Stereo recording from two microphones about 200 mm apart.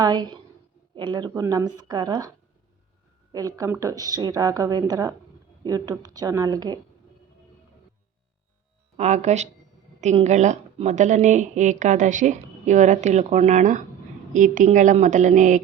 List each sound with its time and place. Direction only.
0.0 s speech: 20° right (ahead or behind)
3.3 s a woman's voice: 15° right (ahead or behind)
9.0 s a woman's voice: 35° right (ahead or behind)